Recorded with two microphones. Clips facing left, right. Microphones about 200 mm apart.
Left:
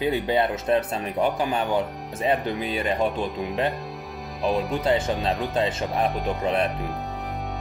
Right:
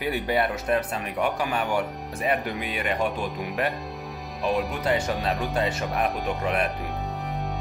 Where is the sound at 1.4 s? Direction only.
20° left (ahead or behind).